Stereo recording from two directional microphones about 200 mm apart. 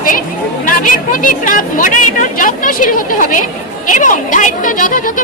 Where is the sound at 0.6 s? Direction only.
40° left (ahead or behind).